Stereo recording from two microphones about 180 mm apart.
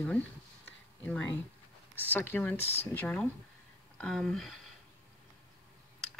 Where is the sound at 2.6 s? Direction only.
35° left (ahead or behind).